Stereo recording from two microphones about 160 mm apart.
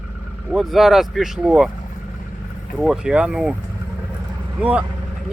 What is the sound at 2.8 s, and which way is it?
Speech, 5° right (ahead or behind).